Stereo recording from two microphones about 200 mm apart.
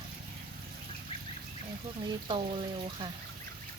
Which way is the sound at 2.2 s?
25° right (ahead or behind).